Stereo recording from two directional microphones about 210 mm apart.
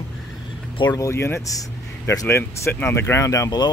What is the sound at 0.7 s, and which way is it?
Speech, 20° left (ahead or behind).